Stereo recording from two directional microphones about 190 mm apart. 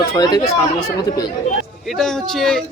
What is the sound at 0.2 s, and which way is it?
Speech, 20° left (ahead or behind).